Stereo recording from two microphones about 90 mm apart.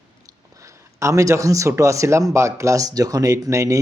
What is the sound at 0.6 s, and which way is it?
Speech, 35° right (ahead or behind).